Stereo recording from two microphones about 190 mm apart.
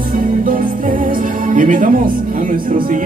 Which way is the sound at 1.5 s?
45° right (ahead or behind).